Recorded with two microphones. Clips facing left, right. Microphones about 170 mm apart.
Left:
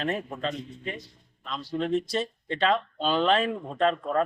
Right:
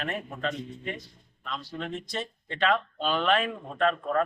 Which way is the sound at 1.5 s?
35° left (ahead or behind).